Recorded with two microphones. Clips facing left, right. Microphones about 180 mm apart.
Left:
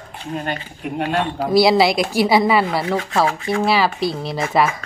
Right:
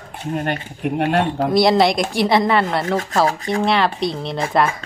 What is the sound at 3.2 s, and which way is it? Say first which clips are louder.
Speech: right 1 dB; 40° right (ahead or behind).